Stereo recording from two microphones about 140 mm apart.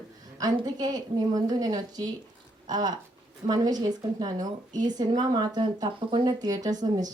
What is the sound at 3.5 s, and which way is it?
A woman's voice, 30° right (ahead or behind).